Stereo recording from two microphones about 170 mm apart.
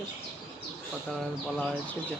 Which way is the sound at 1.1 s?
5° left (ahead or behind).